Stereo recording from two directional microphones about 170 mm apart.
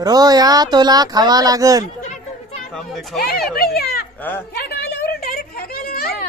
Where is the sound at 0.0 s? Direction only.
25° right (ahead or behind).